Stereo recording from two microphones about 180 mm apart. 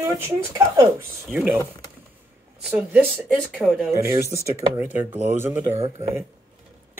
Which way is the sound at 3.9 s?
15° right (ahead or behind).